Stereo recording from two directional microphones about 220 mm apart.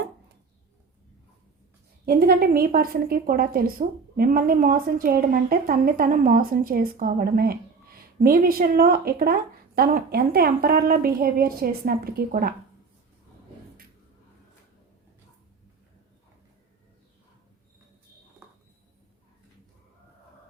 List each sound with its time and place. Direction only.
2.0 s a woman's voice: 45° right (ahead or behind)